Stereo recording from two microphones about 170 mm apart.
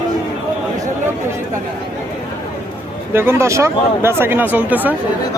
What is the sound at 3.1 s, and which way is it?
Speech, 15° right (ahead or behind).